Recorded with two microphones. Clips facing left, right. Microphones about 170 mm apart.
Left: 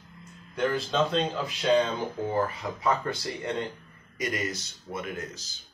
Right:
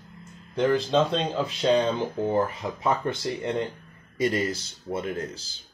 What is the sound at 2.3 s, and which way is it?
Speech, 25° right (ahead or behind).